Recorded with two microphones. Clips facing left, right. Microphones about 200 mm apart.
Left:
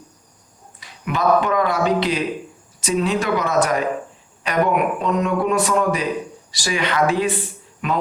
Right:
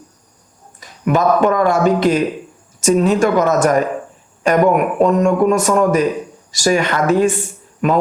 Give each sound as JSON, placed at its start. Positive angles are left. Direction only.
{"t": 0.8, "sound": "a man's voice", "side_deg": -45}